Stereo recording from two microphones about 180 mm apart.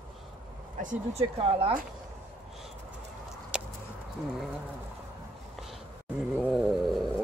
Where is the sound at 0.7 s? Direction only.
45° right (ahead or behind).